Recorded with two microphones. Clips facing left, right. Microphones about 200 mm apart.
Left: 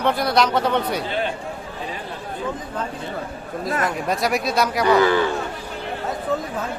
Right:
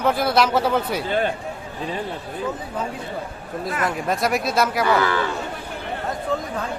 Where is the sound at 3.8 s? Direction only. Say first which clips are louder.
Right 2 dB; centre (ahead or behind).